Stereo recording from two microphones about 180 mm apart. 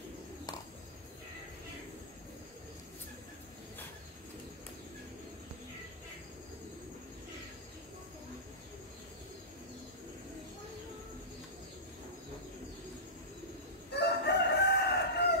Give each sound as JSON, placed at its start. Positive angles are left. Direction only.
{"t": 13.9, "sound": "chicken", "side_deg": 65}